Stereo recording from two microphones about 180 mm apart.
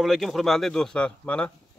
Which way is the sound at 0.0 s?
Centre (ahead or behind).